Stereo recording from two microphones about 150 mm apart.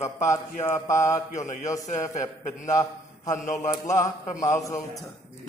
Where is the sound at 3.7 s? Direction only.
25° left (ahead or behind).